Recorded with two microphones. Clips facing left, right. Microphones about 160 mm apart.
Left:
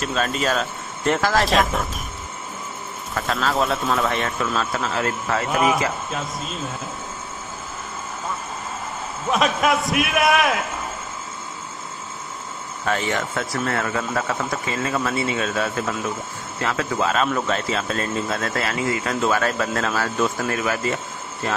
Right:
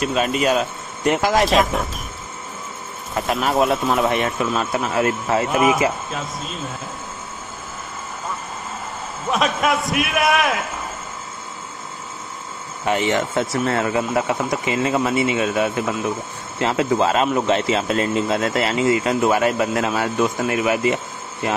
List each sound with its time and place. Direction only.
0.0 s speech: 5° right (ahead or behind)
1.4 s a man's voice: centre (ahead or behind)
3.2 s speech: 20° right (ahead or behind)
3.6 s a man's voice: centre (ahead or behind)
4.6 s speech: 20° right (ahead or behind)
5.5 s a man's voice: centre (ahead or behind)
9.3 s a man's voice: centre (ahead or behind)
12.8 s speech: 20° right (ahead or behind)